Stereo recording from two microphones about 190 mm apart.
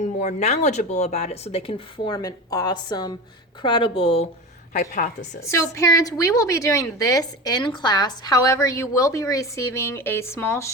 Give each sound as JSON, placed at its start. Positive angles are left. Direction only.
{"t": 0.2, "sound": "a woman's voice", "side_deg": 40}
{"t": 4.7, "sound": "speech", "side_deg": 40}
{"t": 5.5, "sound": "a woman's voice", "side_deg": 15}